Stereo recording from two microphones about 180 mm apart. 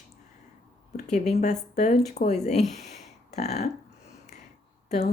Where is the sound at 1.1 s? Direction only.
40° left (ahead or behind).